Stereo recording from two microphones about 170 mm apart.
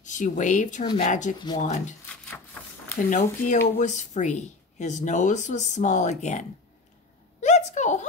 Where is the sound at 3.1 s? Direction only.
45° left (ahead or behind).